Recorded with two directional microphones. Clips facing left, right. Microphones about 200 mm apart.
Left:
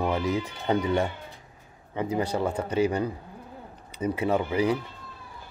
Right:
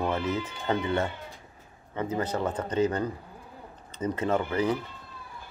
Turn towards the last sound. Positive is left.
turn(degrees=10)  # may be behind; listen again after turning